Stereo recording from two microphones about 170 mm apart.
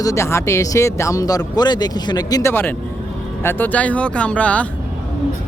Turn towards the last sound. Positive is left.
turn(degrees=10)  # may be behind; listen again after turning